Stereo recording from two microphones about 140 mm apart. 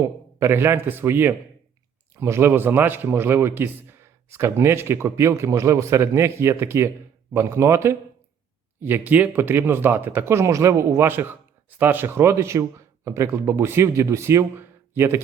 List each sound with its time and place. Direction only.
0.0 s speech: 20° right (ahead or behind)